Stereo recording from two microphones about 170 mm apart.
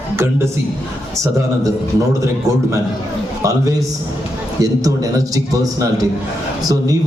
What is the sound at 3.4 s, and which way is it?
A man's voice, 20° right (ahead or behind).